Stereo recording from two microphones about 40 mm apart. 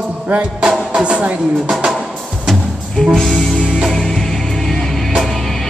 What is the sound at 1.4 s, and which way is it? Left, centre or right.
Speech, centre.